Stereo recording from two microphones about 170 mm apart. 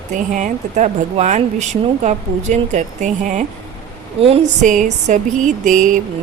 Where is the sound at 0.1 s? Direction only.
45° right (ahead or behind).